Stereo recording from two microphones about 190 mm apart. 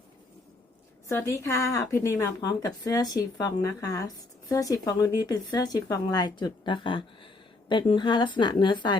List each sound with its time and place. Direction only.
1.0 s a woman's voice: 15° left (ahead or behind)